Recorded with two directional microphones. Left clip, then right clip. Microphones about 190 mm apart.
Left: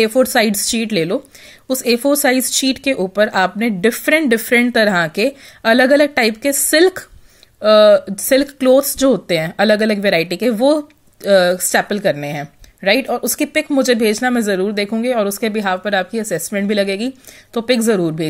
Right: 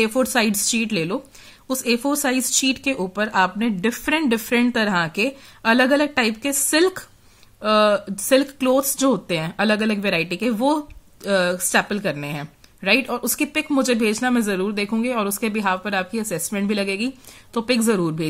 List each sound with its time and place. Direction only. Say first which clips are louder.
0.0 s speech: left 6 dB; 15° left (ahead or behind)